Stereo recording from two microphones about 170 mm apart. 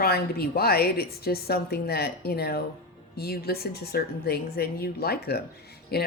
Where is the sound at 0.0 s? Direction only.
65° left (ahead or behind).